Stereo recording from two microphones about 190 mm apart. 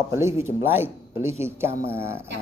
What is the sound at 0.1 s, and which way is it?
Speech, 15° right (ahead or behind).